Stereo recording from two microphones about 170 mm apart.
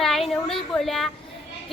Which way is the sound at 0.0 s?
Centre (ahead or behind).